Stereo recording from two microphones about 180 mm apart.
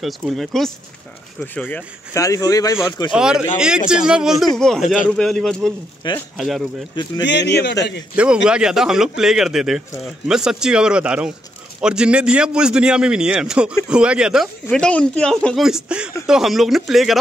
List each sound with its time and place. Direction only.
0.0 s a man's voice: centre (ahead or behind); by 3.1 s 20° left (ahead or behind)
3.1 s a man's voice: 5° right (ahead or behind)
7.2 s speech: 70° left (ahead or behind)
8.5 s a man's voice: 5° right (ahead or behind)